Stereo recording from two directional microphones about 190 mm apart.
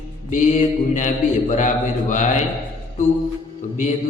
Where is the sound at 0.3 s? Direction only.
40° left (ahead or behind).